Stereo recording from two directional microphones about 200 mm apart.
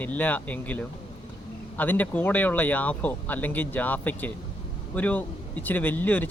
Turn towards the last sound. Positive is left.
turn(degrees=10)  # may be behind; listen again after turning